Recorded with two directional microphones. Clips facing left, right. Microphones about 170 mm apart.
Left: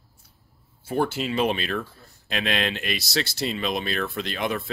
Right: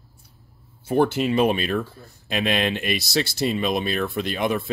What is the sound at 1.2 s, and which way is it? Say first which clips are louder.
Speech: right 4 dB; 45° right (ahead or behind).